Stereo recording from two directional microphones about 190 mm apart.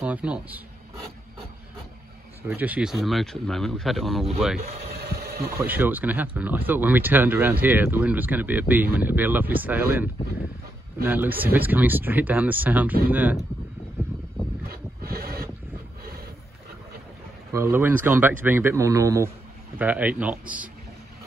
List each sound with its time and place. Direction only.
0.0 s speech: 5° right (ahead or behind)
2.4 s speech: 10° right (ahead or behind)
4.9 s a sound: 55° right (ahead or behind)
5.6 s speech: 10° right (ahead or behind)
11.1 s speech: 10° right (ahead or behind)
14.7 s a sound: 55° right (ahead or behind)
17.5 s speech: 15° right (ahead or behind)